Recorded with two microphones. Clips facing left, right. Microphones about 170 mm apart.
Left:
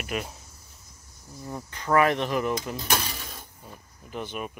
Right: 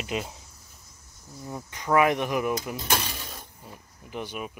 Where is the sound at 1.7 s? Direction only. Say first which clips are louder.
Even; 15° right (ahead or behind).